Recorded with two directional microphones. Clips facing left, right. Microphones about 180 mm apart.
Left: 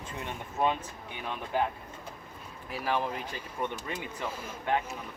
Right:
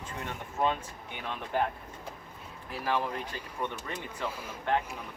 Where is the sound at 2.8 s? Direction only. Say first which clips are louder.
Even; 15° left (ahead or behind).